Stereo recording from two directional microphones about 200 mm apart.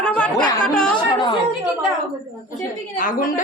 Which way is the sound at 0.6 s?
5° left (ahead or behind).